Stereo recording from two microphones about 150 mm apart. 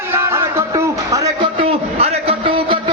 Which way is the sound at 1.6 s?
40° right (ahead or behind).